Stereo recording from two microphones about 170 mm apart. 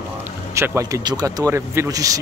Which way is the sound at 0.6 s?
15° right (ahead or behind).